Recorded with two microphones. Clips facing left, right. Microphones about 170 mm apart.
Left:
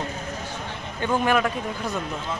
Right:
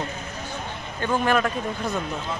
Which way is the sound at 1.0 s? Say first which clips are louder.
Even; 10° left (ahead or behind).